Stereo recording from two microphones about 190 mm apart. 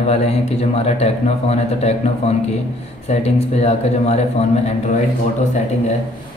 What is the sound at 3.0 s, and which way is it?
Speech, 35° left (ahead or behind).